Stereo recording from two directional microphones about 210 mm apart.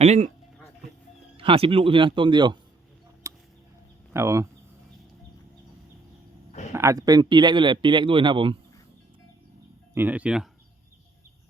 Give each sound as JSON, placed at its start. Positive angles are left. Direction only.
{"t": 0.0, "sound": "speech", "side_deg": -30}
{"t": 1.4, "sound": "a man's voice", "side_deg": -25}
{"t": 3.2, "sound": "a sound", "side_deg": -15}
{"t": 4.1, "sound": "speech", "side_deg": -15}
{"t": 6.7, "sound": "a man's voice", "side_deg": -15}
{"t": 9.9, "sound": "speech", "side_deg": -10}